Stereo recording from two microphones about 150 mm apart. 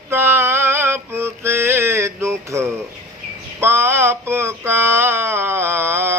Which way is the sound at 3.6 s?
15° right (ahead or behind).